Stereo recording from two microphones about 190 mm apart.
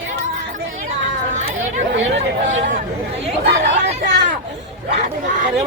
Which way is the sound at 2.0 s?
75° right (ahead or behind).